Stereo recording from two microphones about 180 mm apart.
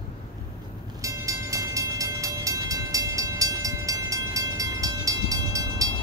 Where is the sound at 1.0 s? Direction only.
15° right (ahead or behind).